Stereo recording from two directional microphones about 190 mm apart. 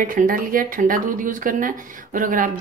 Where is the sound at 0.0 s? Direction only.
45° right (ahead or behind).